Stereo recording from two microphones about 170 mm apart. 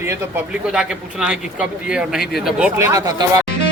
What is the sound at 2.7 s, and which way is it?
Speech, 20° right (ahead or behind).